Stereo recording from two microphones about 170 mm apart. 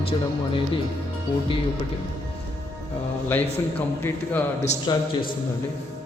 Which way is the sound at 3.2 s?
10° left (ahead or behind).